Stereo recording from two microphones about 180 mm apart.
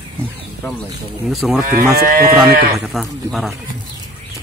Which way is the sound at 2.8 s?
Centre (ahead or behind).